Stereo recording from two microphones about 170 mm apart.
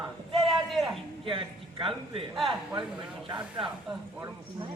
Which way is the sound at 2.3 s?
Centre (ahead or behind).